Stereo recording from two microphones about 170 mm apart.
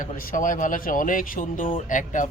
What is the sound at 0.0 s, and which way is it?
Speech, 50° left (ahead or behind).